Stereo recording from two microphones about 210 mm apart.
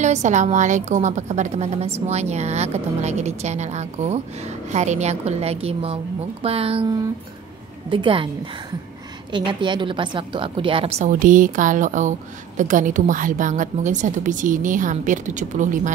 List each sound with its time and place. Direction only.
0.0 s a woman's voice: 35° right (ahead or behind)
9.3 s a woman's voice: 20° right (ahead or behind)